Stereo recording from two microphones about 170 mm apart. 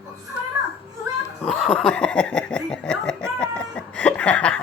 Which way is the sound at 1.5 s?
Centre (ahead or behind).